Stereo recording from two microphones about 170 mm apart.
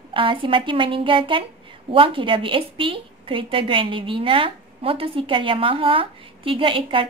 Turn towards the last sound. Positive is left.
turn(degrees=-30)  # may be behind; listen again after turning